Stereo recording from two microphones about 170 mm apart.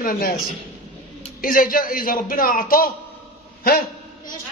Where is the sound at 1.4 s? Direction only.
55° left (ahead or behind).